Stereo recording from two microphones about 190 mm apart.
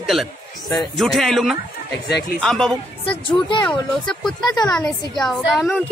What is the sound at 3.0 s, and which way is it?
Speech, 25° left (ahead or behind).